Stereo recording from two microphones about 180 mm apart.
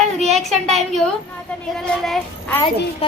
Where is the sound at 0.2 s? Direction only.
Centre (ahead or behind).